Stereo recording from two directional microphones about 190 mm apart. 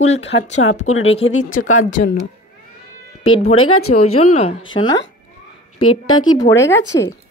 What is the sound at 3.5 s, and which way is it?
Speech, 90° left.